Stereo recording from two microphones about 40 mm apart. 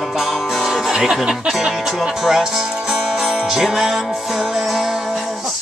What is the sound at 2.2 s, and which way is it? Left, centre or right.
Music, centre.